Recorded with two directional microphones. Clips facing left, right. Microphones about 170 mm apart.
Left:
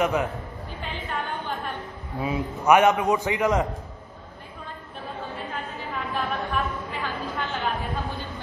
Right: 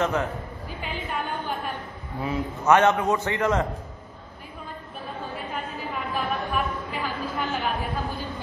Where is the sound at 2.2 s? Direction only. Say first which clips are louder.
Left 1 dB; 10° left (ahead or behind).